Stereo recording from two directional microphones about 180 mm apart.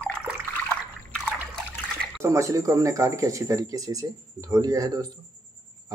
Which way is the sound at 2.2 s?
15° right (ahead or behind).